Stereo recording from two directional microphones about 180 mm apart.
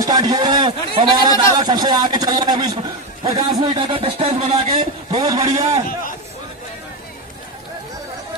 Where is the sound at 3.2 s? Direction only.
25° right (ahead or behind).